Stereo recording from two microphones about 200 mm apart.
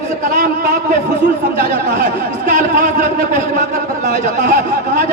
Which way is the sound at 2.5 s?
45° right (ahead or behind).